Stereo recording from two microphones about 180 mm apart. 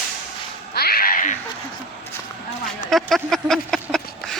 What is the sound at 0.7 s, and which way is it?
Music, 60° left (ahead or behind).